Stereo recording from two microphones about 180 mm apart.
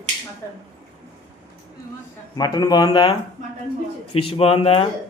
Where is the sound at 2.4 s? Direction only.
20° left (ahead or behind).